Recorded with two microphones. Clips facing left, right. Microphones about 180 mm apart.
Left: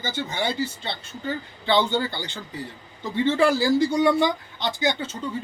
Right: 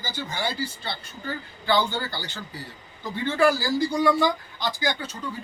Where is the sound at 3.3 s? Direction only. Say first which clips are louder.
Left 2 dB; 25° left (ahead or behind).